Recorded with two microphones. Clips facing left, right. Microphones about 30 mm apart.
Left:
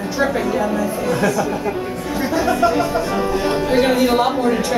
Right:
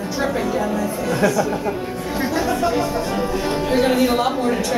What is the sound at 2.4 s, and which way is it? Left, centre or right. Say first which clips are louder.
Speech: left 3 dB; left.